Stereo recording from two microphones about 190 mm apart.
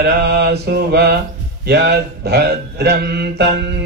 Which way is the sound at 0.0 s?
55° right (ahead or behind).